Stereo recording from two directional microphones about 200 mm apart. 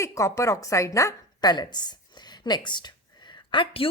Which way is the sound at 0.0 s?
15° left (ahead or behind).